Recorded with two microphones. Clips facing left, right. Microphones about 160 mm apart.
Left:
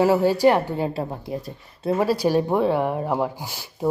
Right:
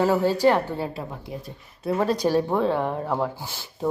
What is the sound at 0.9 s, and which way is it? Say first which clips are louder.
Speech: left 6 dB; 35° left (ahead or behind).